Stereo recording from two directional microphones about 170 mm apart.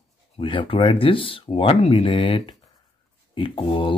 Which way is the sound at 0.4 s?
30° left (ahead or behind).